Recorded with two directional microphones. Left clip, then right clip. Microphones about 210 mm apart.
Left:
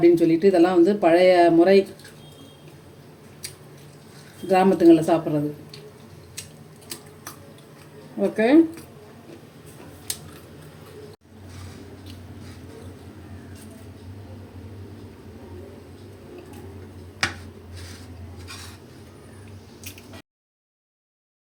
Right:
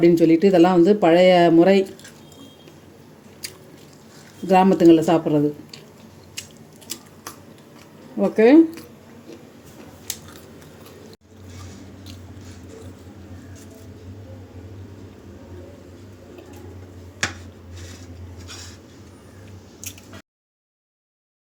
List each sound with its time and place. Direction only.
0.0 s speech: 45° right (ahead or behind)
4.4 s speech: 45° right (ahead or behind)
8.2 s speech: 40° right (ahead or behind)
10.1 s scissors: 45° right (ahead or behind)